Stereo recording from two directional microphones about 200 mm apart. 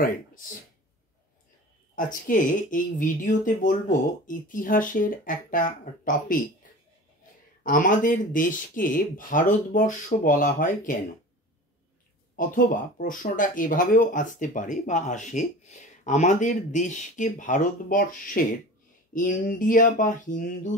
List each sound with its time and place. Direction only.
0.0 s speech: 45° left (ahead or behind)
2.0 s speech: 40° left (ahead or behind)
7.6 s speech: 45° left (ahead or behind)
12.4 s speech: 45° left (ahead or behind)